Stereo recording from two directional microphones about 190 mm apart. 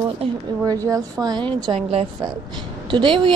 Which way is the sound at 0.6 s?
20° right (ahead or behind).